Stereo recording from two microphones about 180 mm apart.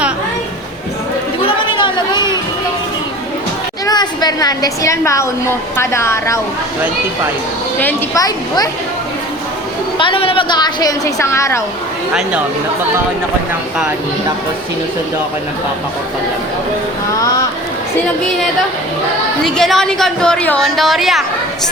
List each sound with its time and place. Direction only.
1.4 s chatter: 30° left (ahead or behind)
3.8 s a woman's voice: 25° left (ahead or behind)
7.8 s a woman's voice: 15° left (ahead or behind)
10.0 s a woman's voice: 30° left (ahead or behind)
19.5 s a woman's voice: centre (ahead or behind)